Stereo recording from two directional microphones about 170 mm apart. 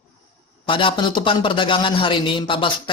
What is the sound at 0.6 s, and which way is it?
A man's voice, 30° left (ahead or behind).